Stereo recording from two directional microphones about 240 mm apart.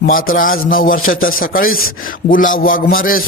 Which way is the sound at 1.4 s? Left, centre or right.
Left.